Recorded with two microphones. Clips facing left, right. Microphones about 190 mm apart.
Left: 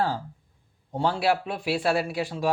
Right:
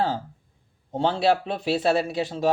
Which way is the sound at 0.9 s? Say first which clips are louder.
Right 3 dB; 25° right (ahead or behind).